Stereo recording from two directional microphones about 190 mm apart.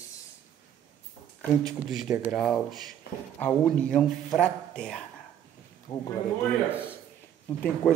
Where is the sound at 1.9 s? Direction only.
Centre (ahead or behind); by 6.1 s 15° left (ahead or behind).